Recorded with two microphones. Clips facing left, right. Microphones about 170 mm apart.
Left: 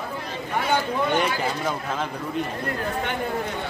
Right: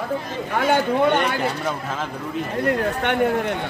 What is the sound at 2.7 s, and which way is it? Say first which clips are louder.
Speech: right 6 dB; 70° right (ahead or behind).